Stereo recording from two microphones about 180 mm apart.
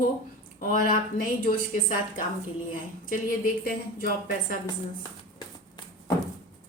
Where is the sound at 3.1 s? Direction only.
50° left (ahead or behind).